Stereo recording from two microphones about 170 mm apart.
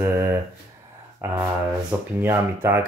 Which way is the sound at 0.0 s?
15° right (ahead or behind).